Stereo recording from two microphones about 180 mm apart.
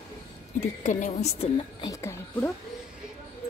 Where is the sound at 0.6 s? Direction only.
45° left (ahead or behind).